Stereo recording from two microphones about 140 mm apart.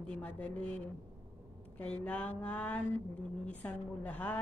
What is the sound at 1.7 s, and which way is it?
A woman's voice, 10° left (ahead or behind).